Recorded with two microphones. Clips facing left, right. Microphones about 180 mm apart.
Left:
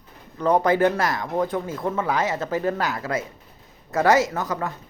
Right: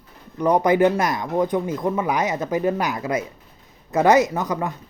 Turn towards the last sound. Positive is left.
turn(degrees=-15)  # may be behind; listen again after turning